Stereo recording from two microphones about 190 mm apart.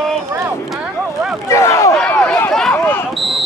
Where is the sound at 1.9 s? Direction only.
5° left (ahead or behind).